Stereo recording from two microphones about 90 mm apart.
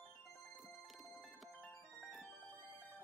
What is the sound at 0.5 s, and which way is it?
Music, centre (ahead or behind).